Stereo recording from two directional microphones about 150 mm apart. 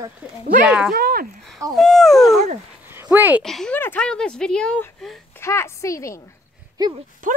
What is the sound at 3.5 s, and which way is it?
Speech, centre (ahead or behind).